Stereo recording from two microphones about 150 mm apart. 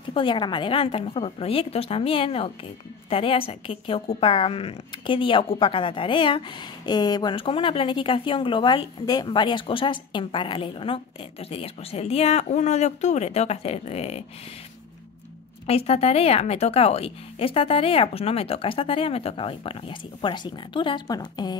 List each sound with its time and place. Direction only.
0.1 s speech: 35° left (ahead or behind)
15.6 s speech: 45° left (ahead or behind); by 21.5 s 30° left (ahead or behind)